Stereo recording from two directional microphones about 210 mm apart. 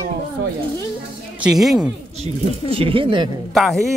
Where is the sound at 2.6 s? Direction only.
25° right (ahead or behind).